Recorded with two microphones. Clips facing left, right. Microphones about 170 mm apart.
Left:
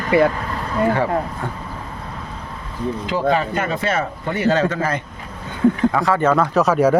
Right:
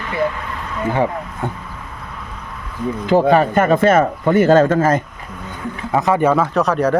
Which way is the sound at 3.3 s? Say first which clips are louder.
Right 7 dB; 50° right (ahead or behind).